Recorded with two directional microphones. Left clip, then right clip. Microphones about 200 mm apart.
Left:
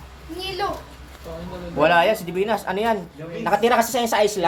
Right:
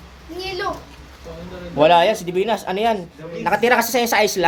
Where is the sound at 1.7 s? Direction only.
30° right (ahead or behind).